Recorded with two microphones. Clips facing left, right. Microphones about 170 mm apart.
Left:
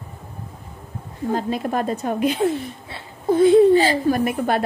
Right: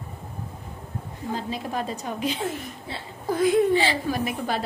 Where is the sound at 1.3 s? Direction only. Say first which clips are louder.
Left 7 dB; 55° left (ahead or behind).